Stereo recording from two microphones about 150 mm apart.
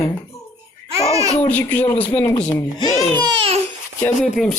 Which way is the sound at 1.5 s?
10° left (ahead or behind).